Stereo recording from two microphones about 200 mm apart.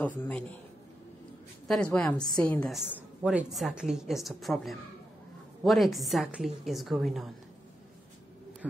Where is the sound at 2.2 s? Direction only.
20° left (ahead or behind).